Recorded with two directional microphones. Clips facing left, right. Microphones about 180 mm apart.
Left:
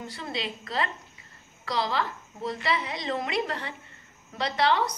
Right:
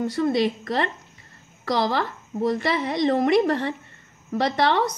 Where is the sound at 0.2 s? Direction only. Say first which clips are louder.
Right 17 dB; 50° right (ahead or behind).